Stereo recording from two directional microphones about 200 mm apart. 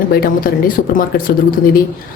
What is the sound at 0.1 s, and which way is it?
Speech, 45° left (ahead or behind).